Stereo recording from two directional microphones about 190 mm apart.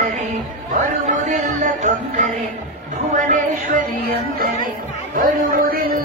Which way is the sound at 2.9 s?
40° right (ahead or behind).